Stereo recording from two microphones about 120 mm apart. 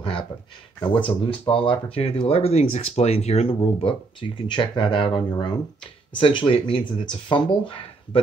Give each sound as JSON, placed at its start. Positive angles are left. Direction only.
{"t": 0.0, "sound": "speech", "side_deg": 45}